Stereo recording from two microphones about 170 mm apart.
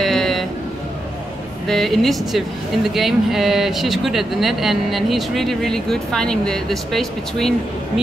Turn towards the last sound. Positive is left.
turn(degrees=0)  # may be behind; listen again after turning